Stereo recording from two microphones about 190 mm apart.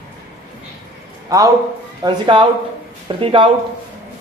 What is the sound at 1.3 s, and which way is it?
A man's voice, 15° right (ahead or behind).